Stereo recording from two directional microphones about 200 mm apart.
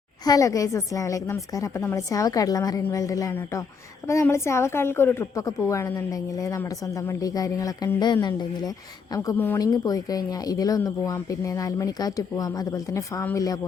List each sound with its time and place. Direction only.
0.3 s speech: 15° left (ahead or behind)